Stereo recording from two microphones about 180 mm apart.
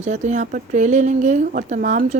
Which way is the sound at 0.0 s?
40° right (ahead or behind).